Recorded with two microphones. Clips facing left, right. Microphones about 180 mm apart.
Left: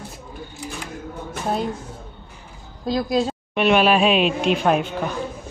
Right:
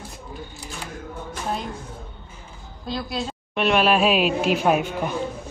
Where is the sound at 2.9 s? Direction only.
40° left (ahead or behind).